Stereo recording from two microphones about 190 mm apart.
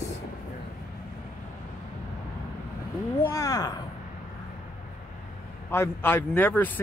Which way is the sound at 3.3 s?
20° left (ahead or behind).